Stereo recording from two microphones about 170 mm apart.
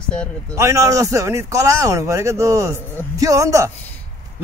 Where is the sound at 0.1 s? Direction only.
5° left (ahead or behind).